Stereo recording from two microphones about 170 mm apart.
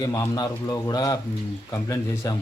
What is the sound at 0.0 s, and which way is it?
A man's voice, 20° left (ahead or behind).